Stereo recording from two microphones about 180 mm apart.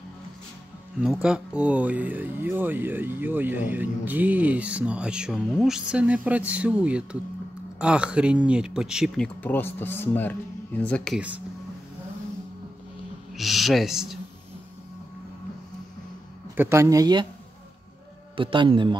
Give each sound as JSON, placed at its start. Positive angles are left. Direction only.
{"t": 1.0, "sound": "speech", "side_deg": -5}
{"t": 11.1, "sound": "speech", "side_deg": -10}
{"t": 13.3, "sound": "speech", "side_deg": 0}
{"t": 16.5, "sound": "speech", "side_deg": -15}
{"t": 18.3, "sound": "a man's voice", "side_deg": -25}